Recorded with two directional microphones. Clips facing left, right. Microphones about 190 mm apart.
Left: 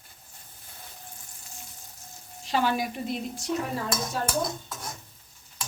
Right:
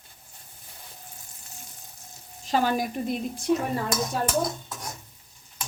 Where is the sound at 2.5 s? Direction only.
45° right (ahead or behind).